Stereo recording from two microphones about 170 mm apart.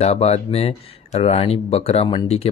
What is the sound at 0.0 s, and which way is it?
Speech, 40° left (ahead or behind).